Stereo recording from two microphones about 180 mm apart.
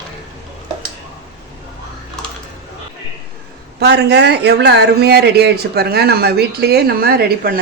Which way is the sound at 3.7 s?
65° right (ahead or behind).